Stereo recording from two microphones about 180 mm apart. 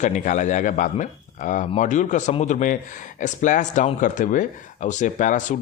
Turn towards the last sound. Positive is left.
turn(degrees=45)  # may be behind; listen again after turning